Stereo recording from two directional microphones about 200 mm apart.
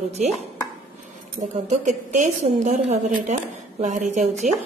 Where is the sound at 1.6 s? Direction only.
35° right (ahead or behind).